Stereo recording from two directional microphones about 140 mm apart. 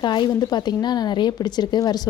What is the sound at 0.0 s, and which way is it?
A woman's voice, 30° left (ahead or behind).